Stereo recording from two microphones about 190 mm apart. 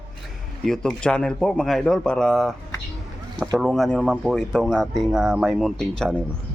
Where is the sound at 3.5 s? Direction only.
Centre (ahead or behind).